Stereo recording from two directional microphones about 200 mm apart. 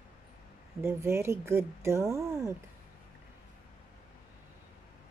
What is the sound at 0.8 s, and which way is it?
Speech, 15° right (ahead or behind).